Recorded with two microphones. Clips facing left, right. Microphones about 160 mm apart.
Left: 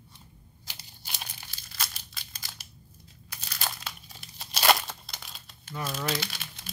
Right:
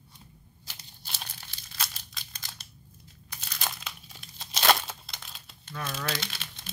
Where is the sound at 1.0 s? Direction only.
10° left (ahead or behind).